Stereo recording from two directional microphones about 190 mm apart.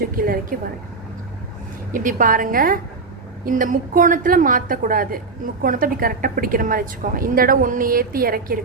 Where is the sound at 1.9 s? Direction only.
45° right (ahead or behind).